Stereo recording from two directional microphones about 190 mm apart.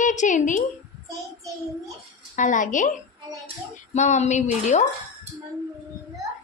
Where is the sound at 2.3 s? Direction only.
40° left (ahead or behind).